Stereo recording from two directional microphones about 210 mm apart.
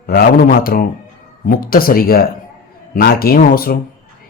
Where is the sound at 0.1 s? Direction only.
45° left (ahead or behind).